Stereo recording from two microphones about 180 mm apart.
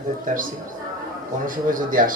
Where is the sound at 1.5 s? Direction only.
50° right (ahead or behind).